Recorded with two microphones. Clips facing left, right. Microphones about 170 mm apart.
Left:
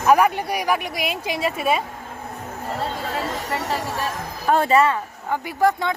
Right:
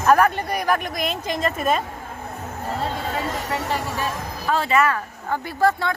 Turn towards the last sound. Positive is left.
turn(degrees=15)  # may be behind; listen again after turning